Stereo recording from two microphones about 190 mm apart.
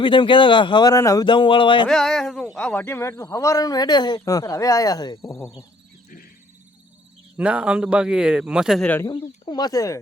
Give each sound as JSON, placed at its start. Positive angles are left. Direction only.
{"t": 0.0, "sound": "speech", "side_deg": 25}
{"t": 1.9, "sound": "speech", "side_deg": 0}
{"t": 7.3, "sound": "a man's voice", "side_deg": -5}
{"t": 9.0, "sound": "speech", "side_deg": 25}